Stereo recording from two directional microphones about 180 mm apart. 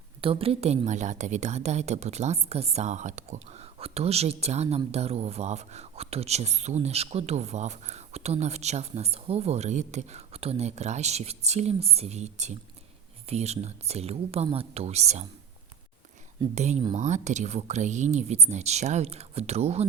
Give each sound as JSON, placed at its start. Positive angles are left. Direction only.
{"t": 0.2, "sound": "speech", "side_deg": -30}
{"t": 16.6, "sound": "speech", "side_deg": -40}